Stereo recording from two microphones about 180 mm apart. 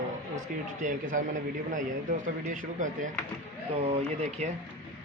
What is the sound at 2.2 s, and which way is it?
Speech, 45° right (ahead or behind).